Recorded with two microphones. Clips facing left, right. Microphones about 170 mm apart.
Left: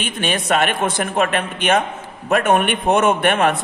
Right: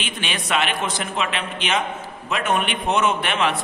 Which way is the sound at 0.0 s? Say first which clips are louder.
Left 7 dB; 50° left (ahead or behind).